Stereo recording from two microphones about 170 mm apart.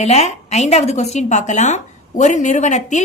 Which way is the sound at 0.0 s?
40° left (ahead or behind).